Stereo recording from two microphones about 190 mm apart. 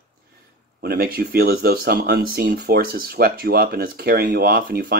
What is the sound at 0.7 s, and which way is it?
Speech, 50° right (ahead or behind).